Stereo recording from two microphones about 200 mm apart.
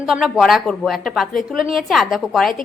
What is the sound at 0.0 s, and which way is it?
A woman's voice, centre (ahead or behind).